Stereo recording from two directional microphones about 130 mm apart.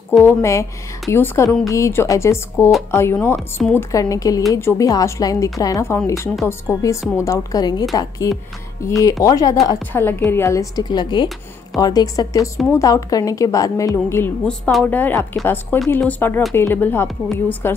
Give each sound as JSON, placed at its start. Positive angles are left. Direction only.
{"t": 0.2, "sound": "a woman's voice", "side_deg": 20}
{"t": 14.6, "sound": "speech", "side_deg": 0}
{"t": 14.9, "sound": "a woman's voice", "side_deg": 15}